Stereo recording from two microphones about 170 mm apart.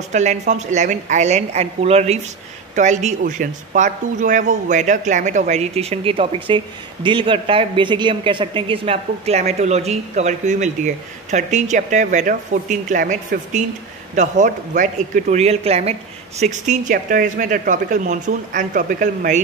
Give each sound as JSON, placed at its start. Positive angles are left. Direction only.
{"t": 0.1, "sound": "speech", "side_deg": -45}